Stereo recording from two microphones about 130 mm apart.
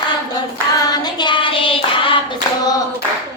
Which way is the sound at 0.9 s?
35° left (ahead or behind).